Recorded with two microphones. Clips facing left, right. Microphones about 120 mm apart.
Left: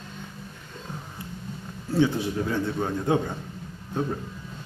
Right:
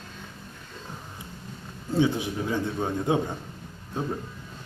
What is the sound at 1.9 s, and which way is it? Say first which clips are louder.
A man's voice: left 1 dB; 15° right (ahead or behind).